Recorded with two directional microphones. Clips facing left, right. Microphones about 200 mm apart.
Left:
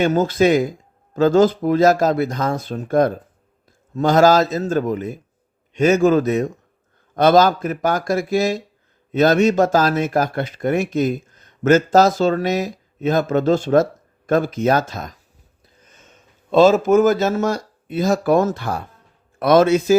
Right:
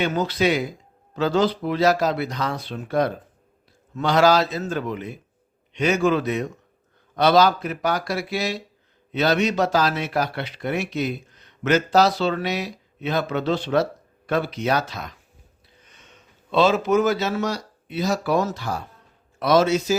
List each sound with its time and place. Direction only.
0.0 s speech: 45° left (ahead or behind)